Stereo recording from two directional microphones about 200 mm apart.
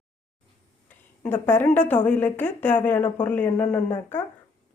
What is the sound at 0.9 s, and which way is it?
A woman's voice, 10° left (ahead or behind).